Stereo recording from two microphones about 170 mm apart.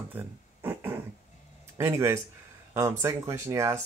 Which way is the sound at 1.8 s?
15° right (ahead or behind).